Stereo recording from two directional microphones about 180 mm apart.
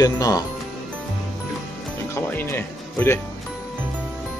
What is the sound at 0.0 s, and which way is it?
Speech, 20° left (ahead or behind).